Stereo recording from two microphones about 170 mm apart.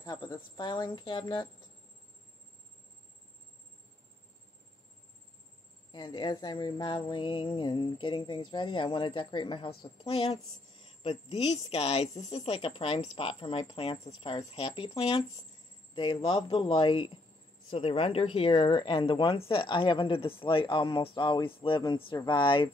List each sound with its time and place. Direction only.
0.0 s speech: 25° left (ahead or behind)
5.9 s speech: 25° left (ahead or behind)